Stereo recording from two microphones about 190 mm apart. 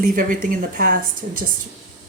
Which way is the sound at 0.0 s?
45° right (ahead or behind).